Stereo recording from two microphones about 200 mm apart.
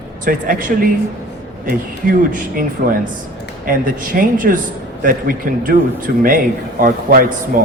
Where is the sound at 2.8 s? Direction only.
45° right (ahead or behind).